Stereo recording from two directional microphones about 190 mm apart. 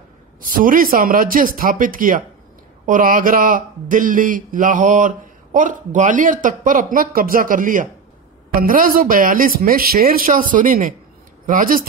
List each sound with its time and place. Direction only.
0.4 s a man's voice: 45° right (ahead or behind)